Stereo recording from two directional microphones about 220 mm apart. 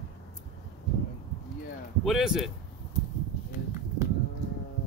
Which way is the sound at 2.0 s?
Centre (ahead or behind).